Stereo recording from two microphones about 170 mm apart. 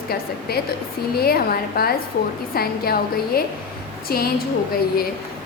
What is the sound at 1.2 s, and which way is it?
A woman's voice, 65° left (ahead or behind).